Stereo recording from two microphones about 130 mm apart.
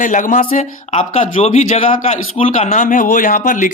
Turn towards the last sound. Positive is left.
turn(degrees=85)